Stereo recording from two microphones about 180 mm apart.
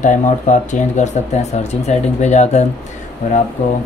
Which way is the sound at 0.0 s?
45° left (ahead or behind).